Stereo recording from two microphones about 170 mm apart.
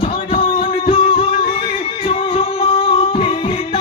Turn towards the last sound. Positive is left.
turn(degrees=30)  # may be behind; listen again after turning